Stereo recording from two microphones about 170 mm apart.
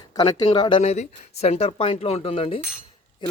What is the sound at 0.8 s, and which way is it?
Speech, 40° left (ahead or behind).